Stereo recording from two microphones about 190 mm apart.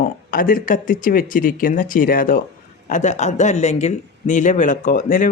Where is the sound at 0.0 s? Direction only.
50° left (ahead or behind).